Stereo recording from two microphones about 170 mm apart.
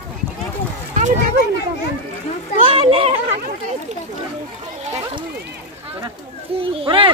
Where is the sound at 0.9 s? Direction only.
50° right (ahead or behind).